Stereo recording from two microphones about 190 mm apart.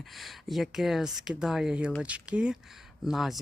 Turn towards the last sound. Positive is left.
turn(degrees=0)  # may be behind; listen again after turning